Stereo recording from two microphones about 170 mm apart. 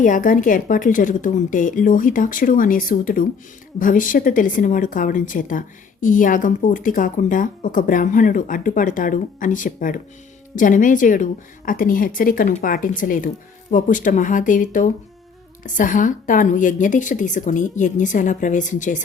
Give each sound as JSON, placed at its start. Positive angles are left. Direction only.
{"t": 0.0, "sound": "speech", "side_deg": 50}